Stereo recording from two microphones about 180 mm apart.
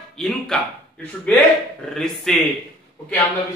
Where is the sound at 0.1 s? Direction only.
5° left (ahead or behind).